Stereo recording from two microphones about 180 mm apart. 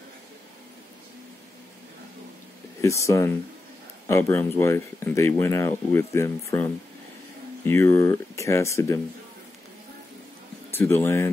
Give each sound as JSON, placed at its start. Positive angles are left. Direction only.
{"t": 2.8, "sound": "speech", "side_deg": 15}
{"t": 7.6, "sound": "speech", "side_deg": 15}
{"t": 10.7, "sound": "speech", "side_deg": 10}